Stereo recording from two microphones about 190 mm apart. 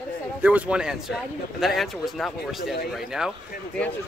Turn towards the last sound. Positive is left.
turn(degrees=0)  # may be behind; listen again after turning